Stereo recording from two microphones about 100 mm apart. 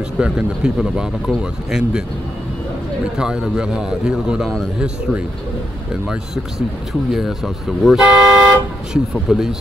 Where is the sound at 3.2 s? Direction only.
5° right (ahead or behind).